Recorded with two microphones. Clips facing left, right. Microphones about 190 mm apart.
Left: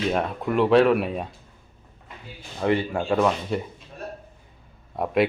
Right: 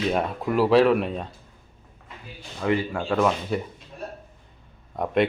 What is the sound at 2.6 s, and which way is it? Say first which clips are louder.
Speech: left 1 dB; 30° left (ahead or behind).